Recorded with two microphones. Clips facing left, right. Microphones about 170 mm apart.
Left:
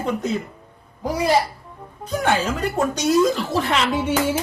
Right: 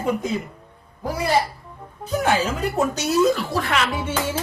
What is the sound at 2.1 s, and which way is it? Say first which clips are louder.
A woman's voice: even; 5° right (ahead or behind).